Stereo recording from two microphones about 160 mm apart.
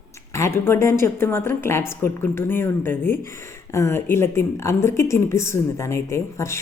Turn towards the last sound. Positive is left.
turn(degrees=20)  # may be behind; listen again after turning